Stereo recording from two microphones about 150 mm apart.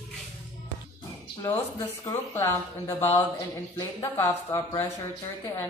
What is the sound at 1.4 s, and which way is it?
A woman's voice, 20° left (ahead or behind).